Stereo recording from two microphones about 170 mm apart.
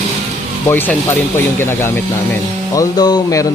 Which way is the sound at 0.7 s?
10° left (ahead or behind).